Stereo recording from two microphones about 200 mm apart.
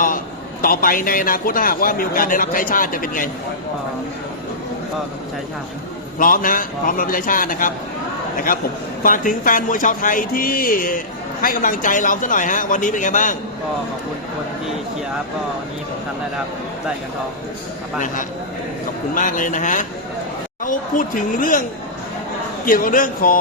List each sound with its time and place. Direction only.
0.6 s a man's voice: 45° left (ahead or behind)
6.1 s a man's voice: 45° left (ahead or behind)
9.0 s a man's voice: 40° left (ahead or behind)
19.1 s a man's voice: 40° left (ahead or behind)
20.9 s a man's voice: 40° left (ahead or behind)
22.6 s a man's voice: 45° left (ahead or behind)